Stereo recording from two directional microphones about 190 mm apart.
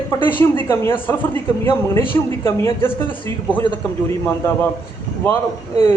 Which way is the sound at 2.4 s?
15° left (ahead or behind).